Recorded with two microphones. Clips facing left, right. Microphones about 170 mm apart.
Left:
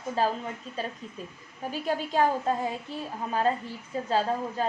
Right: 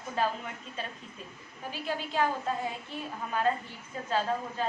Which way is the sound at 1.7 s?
45° left (ahead or behind).